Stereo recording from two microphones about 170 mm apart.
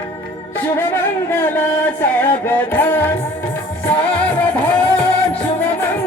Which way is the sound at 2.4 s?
10° left (ahead or behind).